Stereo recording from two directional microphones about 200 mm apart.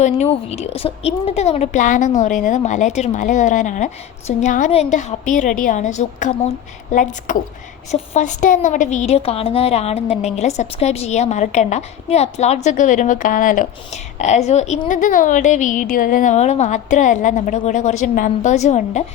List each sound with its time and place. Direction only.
0.0 s a woman's voice: 35° left (ahead or behind)